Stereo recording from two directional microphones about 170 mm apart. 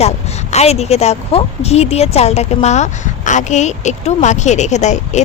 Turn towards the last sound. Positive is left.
turn(degrees=45)  # may be behind; listen again after turning